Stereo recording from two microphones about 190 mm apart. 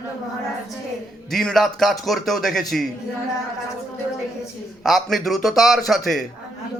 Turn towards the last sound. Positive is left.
turn(degrees=0)  # may be behind; listen again after turning